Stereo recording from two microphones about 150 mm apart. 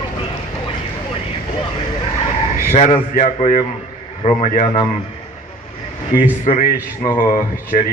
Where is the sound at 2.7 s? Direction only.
50° left (ahead or behind).